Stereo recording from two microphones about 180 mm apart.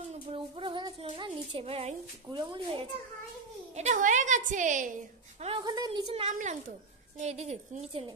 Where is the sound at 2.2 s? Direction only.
30° right (ahead or behind).